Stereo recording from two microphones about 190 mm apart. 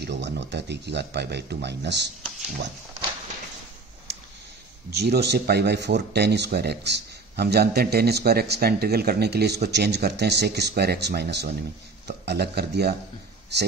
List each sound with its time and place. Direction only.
0.0 s a man's voice: 65° right (ahead or behind)
4.1 s a sound: 60° right (ahead or behind)
4.9 s a man's voice: 60° right (ahead or behind)